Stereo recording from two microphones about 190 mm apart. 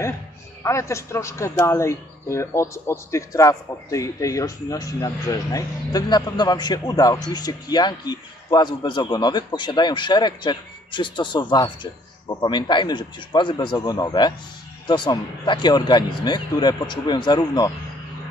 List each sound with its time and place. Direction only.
0.7 s a man's voice: 15° left (ahead or behind)